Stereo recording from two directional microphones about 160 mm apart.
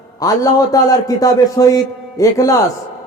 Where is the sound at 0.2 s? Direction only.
25° left (ahead or behind).